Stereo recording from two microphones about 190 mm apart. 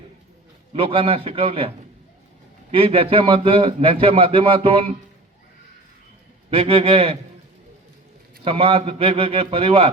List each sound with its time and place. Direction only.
0.7 s a man's voice: 30° right (ahead or behind)
2.7 s a man's voice: 30° right (ahead or behind)
6.5 s a man's voice: 30° right (ahead or behind)
8.4 s a man's voice: 30° right (ahead or behind)